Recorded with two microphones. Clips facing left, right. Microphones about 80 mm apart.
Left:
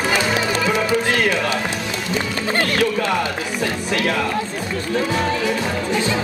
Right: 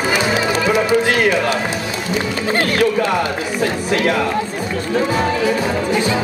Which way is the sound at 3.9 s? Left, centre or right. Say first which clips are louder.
Right 4 dB; centre.